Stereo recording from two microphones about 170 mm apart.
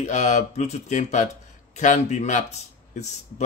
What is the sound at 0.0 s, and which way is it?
A man's voice, 45° left (ahead or behind).